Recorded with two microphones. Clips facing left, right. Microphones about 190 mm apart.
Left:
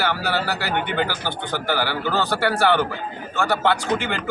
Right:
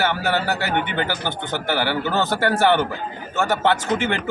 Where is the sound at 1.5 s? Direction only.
20° right (ahead or behind).